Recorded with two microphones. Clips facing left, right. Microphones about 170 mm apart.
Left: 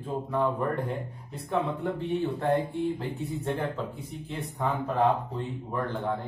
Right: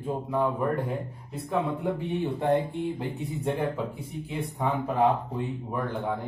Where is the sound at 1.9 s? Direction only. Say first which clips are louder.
Even; 15° right (ahead or behind).